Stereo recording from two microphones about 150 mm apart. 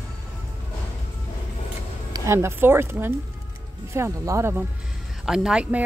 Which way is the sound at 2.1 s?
20° right (ahead or behind).